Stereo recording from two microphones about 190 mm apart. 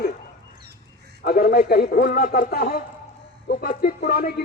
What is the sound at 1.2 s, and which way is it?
A man's voice, 50° left (ahead or behind).